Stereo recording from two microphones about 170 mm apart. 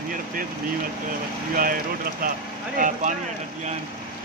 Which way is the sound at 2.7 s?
50° right (ahead or behind).